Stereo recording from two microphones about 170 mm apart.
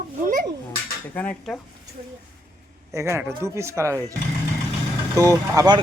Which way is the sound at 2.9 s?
15° right (ahead or behind).